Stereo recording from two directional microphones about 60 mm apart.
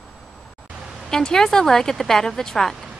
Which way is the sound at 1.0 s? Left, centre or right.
Centre.